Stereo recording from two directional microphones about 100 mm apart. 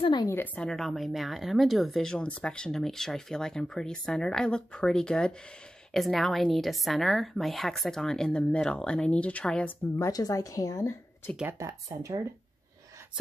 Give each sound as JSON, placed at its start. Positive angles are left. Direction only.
{"t": 0.0, "sound": "speech", "side_deg": 45}
{"t": 0.6, "sound": "a woman's voice", "side_deg": 5}
{"t": 9.9, "sound": "a woman's voice", "side_deg": 35}
{"t": 11.4, "sound": "speech", "side_deg": -30}